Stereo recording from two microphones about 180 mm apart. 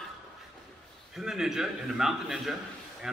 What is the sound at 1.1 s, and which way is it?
A man's voice, 5° right (ahead or behind).